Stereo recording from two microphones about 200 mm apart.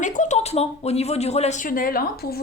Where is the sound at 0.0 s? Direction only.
40° left (ahead or behind).